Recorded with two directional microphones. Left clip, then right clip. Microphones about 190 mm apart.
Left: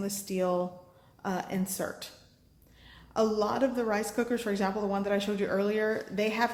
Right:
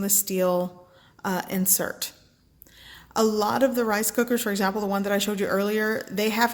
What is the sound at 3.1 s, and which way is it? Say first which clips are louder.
Speech: right 5 dB; 65° right (ahead or behind).